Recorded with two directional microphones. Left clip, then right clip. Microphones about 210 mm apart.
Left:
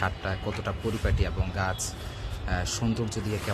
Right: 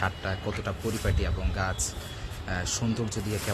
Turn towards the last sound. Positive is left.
turn(degrees=5)  # may be behind; listen again after turning